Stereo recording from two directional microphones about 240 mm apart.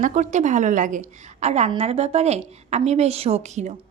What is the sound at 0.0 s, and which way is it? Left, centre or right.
A woman's voice, right.